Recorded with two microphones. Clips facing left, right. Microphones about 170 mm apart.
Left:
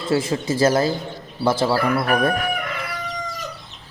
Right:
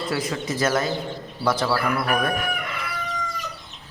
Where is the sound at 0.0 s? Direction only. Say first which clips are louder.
Left 5 dB; 25° left (ahead or behind).